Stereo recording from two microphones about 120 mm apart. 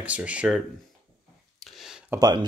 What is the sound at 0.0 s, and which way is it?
Speech, 10° right (ahead or behind).